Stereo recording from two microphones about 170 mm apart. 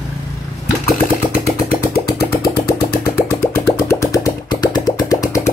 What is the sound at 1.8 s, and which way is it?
Engine, 65° left (ahead or behind).